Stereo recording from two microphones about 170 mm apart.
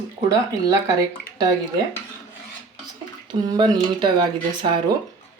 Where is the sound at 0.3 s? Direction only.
20° right (ahead or behind).